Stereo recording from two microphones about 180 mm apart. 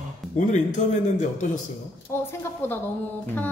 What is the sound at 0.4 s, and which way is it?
Speech, 45° left (ahead or behind).